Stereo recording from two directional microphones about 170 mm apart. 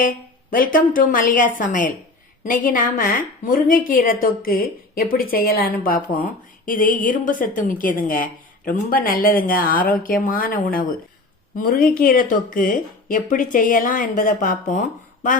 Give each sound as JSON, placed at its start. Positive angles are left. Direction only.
{"t": 0.0, "sound": "a woman's voice", "side_deg": 55}